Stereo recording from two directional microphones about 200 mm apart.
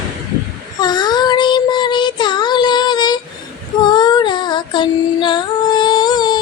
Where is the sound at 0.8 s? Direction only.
20° left (ahead or behind).